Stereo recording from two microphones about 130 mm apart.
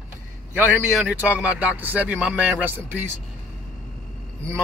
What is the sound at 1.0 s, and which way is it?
A man's voice, 15° right (ahead or behind).